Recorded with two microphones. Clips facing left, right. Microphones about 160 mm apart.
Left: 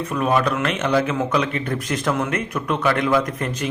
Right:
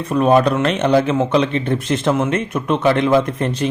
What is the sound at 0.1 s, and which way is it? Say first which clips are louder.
A man's voice: right 7 dB; 30° right (ahead or behind).